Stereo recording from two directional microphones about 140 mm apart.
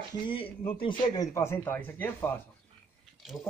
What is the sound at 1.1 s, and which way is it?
Speech, 20° left (ahead or behind).